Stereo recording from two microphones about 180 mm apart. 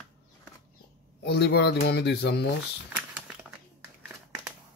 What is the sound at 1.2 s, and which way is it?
Speech, 65° left (ahead or behind).